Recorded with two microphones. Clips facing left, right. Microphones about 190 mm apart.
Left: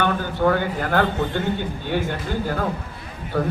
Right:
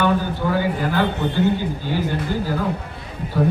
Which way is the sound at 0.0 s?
60° left (ahead or behind).